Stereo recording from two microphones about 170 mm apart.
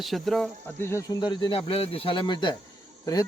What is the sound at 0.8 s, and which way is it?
Speech, 15° left (ahead or behind).